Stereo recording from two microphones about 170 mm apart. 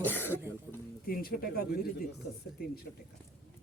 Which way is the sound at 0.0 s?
10° left (ahead or behind).